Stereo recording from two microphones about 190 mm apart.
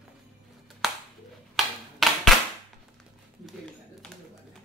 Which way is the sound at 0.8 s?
Centre (ahead or behind).